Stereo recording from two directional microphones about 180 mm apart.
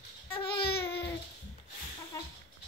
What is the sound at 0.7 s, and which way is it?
Babbling, 65° left (ahead or behind).